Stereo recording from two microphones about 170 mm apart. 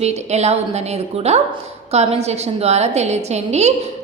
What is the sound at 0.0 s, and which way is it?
A woman's voice, 40° right (ahead or behind).